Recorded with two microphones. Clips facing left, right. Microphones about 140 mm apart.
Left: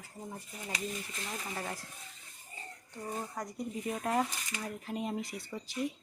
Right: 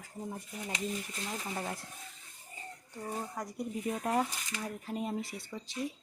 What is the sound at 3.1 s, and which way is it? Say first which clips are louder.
Speech: right 1 dB; centre (ahead or behind).